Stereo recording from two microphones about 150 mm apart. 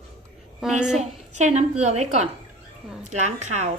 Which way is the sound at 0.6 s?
5° right (ahead or behind).